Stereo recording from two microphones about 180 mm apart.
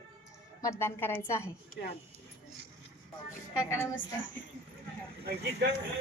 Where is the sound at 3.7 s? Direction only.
15° left (ahead or behind).